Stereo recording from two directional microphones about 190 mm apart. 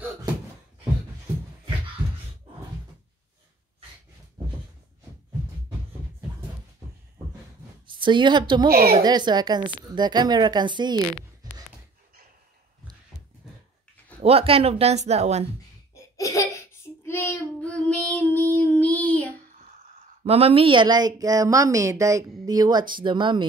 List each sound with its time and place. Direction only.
2.0 s a sound: 25° right (ahead or behind)
7.8 s a woman's voice: 25° right (ahead or behind)
8.6 s a woman's voice: 50° right (ahead or behind)
8.9 s speech: 20° right (ahead or behind)
14.2 s speech: 30° right (ahead or behind)
15.9 s child singing: 15° left (ahead or behind)
20.2 s speech: 30° right (ahead or behind)